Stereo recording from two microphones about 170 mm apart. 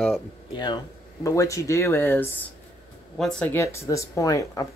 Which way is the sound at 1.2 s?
20° left (ahead or behind).